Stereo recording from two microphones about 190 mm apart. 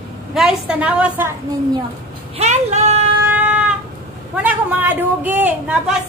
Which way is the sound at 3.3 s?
5° right (ahead or behind).